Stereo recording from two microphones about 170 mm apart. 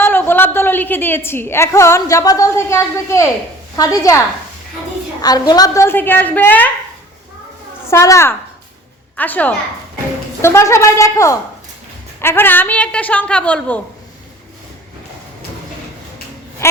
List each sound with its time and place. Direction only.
0.0 s a woman's voice: 10° left (ahead or behind)
5.2 s a woman's voice: 25° left (ahead or behind)
7.9 s a woman's voice: 15° left (ahead or behind)